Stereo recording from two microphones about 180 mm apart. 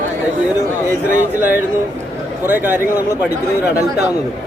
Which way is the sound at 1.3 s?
10° right (ahead or behind).